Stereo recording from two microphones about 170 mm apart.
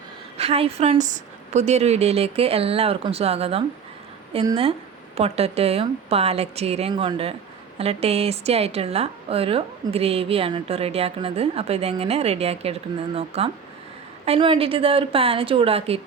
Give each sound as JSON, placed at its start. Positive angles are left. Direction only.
{"t": 0.3, "sound": "a woman's voice", "side_deg": -35}
{"t": 0.9, "sound": "a woman's voice", "side_deg": -45}